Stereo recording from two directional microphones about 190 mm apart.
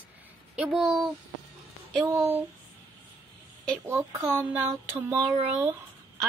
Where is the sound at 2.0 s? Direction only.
10° right (ahead or behind).